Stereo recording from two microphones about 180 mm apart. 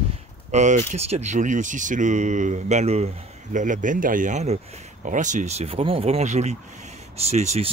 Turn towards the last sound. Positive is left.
turn(degrees=-40)  # may be behind; listen again after turning